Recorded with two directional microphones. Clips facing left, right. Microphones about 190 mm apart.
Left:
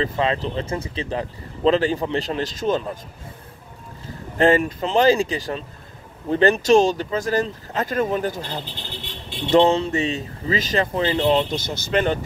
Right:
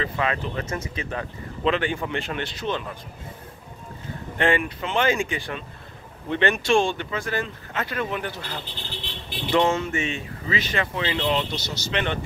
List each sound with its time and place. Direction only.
0.0 s speech: 30° left (ahead or behind)
4.4 s speech: 40° left (ahead or behind)
9.0 s vehicle: 25° left (ahead or behind)
9.7 s speech: 35° left (ahead or behind)